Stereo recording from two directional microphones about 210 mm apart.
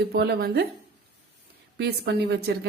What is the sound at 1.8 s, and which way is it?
Speech, 50° right (ahead or behind).